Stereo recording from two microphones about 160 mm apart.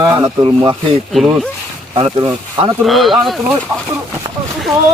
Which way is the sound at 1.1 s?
Centre (ahead or behind).